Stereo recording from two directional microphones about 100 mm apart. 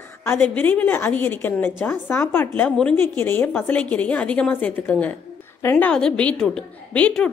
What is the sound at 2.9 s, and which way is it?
A woman's voice, 20° left (ahead or behind).